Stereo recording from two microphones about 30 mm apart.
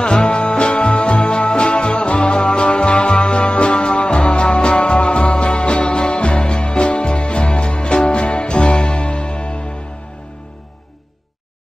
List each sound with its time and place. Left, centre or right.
0.0 s music: left